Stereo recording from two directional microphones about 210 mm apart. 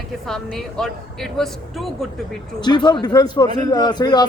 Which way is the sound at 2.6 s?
20° left (ahead or behind).